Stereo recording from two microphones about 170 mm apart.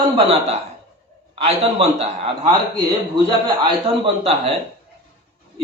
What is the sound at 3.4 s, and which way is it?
Speech, 30° right (ahead or behind).